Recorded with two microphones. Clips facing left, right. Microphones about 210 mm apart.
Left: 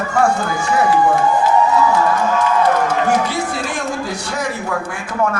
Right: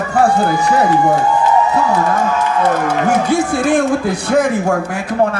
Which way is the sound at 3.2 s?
55° right (ahead or behind).